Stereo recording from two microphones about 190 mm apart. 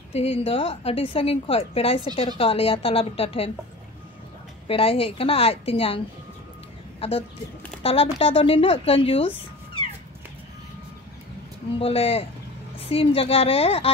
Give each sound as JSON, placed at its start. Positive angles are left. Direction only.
{"t": 0.1, "sound": "a woman's voice", "side_deg": 30}
{"t": 4.6, "sound": "a woman's voice", "side_deg": 30}
{"t": 7.0, "sound": "a woman's voice", "side_deg": 30}
{"t": 11.8, "sound": "a woman's voice", "side_deg": 30}